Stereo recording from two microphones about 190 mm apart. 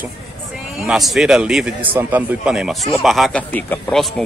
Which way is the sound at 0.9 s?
Centre (ahead or behind).